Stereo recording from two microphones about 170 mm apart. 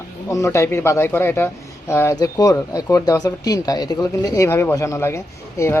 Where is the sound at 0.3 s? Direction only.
15° left (ahead or behind).